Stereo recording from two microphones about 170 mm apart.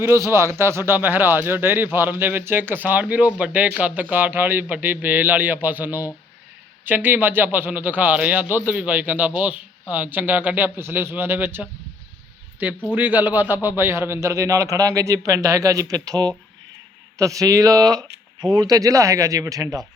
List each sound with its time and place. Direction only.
0.0 s a man's voice: 15° right (ahead or behind)
12.9 s a man's voice: 10° right (ahead or behind)